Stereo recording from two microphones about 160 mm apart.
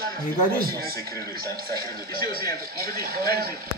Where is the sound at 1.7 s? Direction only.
70° right (ahead or behind).